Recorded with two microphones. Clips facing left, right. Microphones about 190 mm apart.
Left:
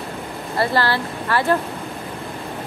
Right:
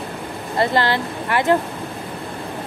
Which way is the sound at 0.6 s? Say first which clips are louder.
Right 1 dB; 20° right (ahead or behind).